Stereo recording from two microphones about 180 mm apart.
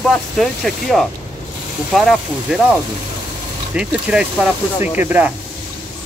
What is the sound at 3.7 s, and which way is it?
Speech, 5° right (ahead or behind).